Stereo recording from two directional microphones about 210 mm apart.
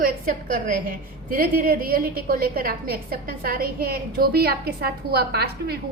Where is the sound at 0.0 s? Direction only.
40° right (ahead or behind).